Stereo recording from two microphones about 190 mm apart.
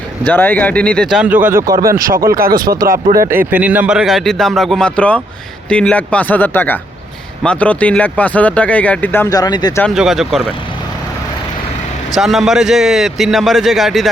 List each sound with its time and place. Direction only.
0.3 s speech: 10° left (ahead or behind)
1.2 s speech: 10° right (ahead or behind)
2.4 s speech: 50° right (ahead or behind)
3.3 s a man's voice: 10° right (ahead or behind); by 9.8 s 20° left (ahead or behind)
9.8 s a man's voice: centre (ahead or behind)
12.1 s a man's voice: centre (ahead or behind)